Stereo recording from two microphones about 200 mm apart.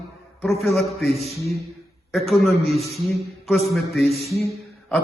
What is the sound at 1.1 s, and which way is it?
Speech, 30° right (ahead or behind).